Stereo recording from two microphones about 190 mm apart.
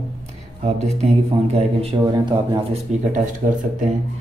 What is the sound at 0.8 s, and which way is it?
Speech, 35° right (ahead or behind).